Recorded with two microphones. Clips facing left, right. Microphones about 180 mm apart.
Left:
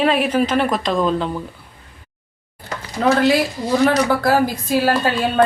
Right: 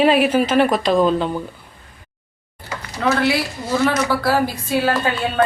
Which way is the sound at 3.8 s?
45° left (ahead or behind).